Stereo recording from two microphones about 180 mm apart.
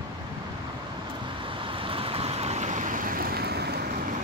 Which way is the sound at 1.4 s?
30° right (ahead or behind).